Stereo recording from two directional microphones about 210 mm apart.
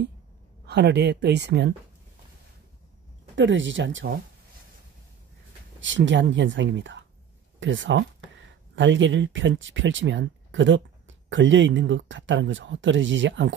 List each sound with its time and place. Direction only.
0.7 s speech: 55° right (ahead or behind)
3.3 s speech: 60° right (ahead or behind)
5.8 s speech: 60° right (ahead or behind)